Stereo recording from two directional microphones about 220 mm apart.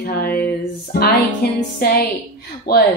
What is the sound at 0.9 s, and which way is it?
Music, 50° left (ahead or behind).